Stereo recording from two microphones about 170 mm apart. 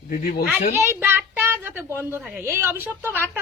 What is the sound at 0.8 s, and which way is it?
A woman's voice, 10° right (ahead or behind).